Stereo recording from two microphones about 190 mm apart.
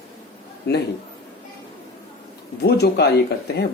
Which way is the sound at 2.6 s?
60° left (ahead or behind).